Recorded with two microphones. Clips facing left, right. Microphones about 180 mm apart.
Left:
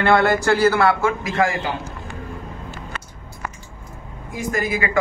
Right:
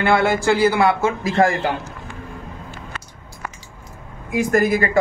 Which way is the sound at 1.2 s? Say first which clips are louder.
Right 7 dB; 35° right (ahead or behind).